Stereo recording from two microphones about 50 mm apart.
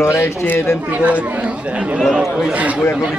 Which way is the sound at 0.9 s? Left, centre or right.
Right.